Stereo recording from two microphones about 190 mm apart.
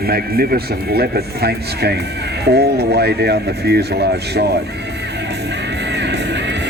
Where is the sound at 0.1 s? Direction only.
55° right (ahead or behind).